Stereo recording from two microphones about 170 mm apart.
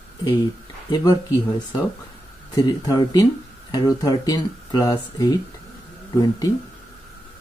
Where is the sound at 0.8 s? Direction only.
25° left (ahead or behind).